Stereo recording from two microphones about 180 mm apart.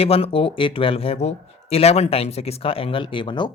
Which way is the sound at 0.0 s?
35° left (ahead or behind).